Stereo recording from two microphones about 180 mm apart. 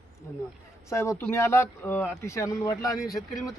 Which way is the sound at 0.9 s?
15° left (ahead or behind).